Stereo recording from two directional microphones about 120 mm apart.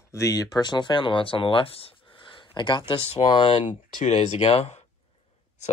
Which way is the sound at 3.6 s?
70° left (ahead or behind).